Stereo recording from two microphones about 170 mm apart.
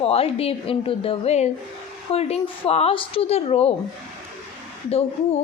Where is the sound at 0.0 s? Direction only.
35° left (ahead or behind).